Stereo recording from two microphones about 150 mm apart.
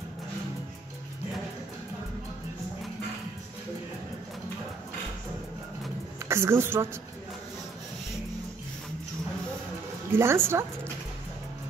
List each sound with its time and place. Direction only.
6.2 s a woman's voice: 15° right (ahead or behind)
10.1 s a woman's voice: 15° right (ahead or behind)